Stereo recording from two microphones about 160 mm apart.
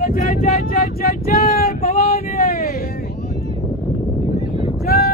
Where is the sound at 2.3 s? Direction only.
65° left (ahead or behind).